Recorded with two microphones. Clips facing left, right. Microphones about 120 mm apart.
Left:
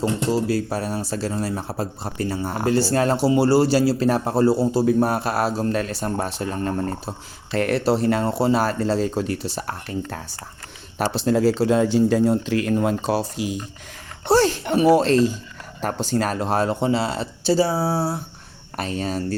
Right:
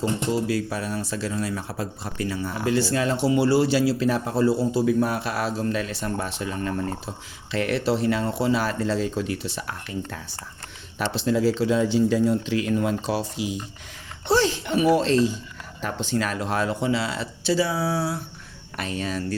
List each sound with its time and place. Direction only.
0.0 s speech: 40° left (ahead or behind)